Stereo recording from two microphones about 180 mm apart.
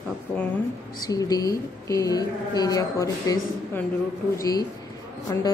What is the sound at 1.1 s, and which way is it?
A woman's voice, 20° left (ahead or behind).